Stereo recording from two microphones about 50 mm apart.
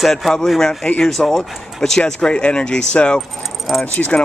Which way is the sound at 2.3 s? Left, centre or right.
Left.